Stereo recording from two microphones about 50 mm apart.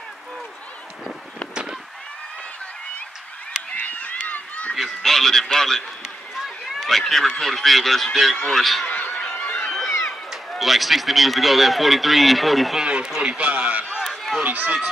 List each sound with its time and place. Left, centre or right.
1.5 s a sound: centre
3.7 s honk: left
4.7 s a man's voice: centre
8.9 s a sound: left
9.7 s run: centre
10.6 s a man's voice: centre
12.8 s speech: centre
14.0 s run: centre
14.4 s speech: right